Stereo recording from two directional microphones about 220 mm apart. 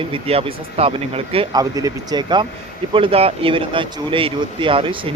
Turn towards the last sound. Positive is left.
turn(degrees=-25)  # may be behind; listen again after turning